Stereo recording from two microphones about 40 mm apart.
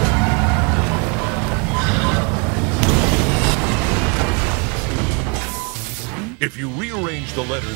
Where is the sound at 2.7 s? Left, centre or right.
Centre.